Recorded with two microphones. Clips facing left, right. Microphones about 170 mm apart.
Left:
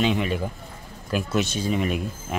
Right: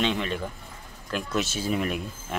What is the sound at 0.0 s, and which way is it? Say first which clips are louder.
Speech: left 4 dB; 10° left (ahead or behind).